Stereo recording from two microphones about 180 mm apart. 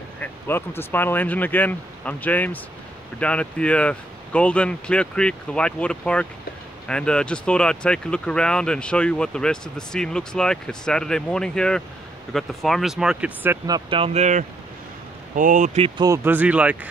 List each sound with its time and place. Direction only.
0.2 s speech: 10° left (ahead or behind); by 13.6 s 10° right (ahead or behind)
13.7 s speech: 25° right (ahead or behind)
16.0 s speech: 15° right (ahead or behind)